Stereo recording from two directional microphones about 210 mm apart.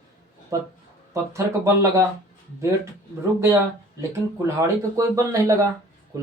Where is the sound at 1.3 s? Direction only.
15° right (ahead or behind).